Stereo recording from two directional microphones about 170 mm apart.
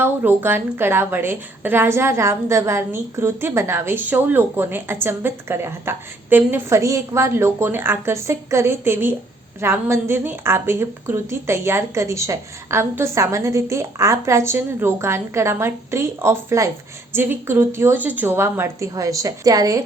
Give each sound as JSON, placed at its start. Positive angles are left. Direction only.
{"t": 0.0, "sound": "a woman's voice", "side_deg": -10}